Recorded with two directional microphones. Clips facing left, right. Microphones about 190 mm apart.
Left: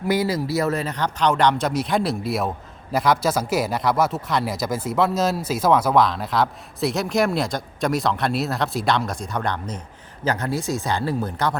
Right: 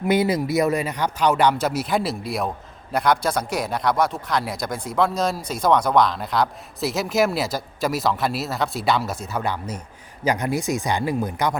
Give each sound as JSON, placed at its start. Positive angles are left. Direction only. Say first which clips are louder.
{"t": 0.1, "sound": "speech", "louder": "right 2 dB", "side_deg": -20}